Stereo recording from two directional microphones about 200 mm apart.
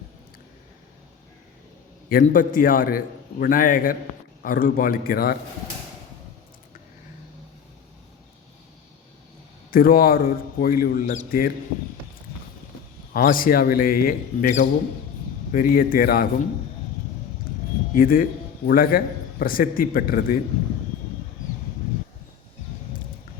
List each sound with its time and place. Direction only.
2.0 s a man's voice: 45° left (ahead or behind)
9.7 s a man's voice: 45° left (ahead or behind)
13.1 s a man's voice: 45° left (ahead or behind)
17.5 s a sound: 45° left (ahead or behind)
17.9 s a man's voice: 45° left (ahead or behind)